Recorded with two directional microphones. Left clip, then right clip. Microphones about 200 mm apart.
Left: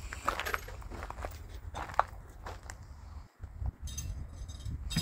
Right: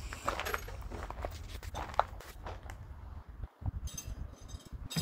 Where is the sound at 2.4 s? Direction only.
10° left (ahead or behind).